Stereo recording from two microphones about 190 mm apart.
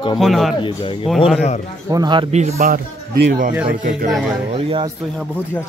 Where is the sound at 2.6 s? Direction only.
55° right (ahead or behind).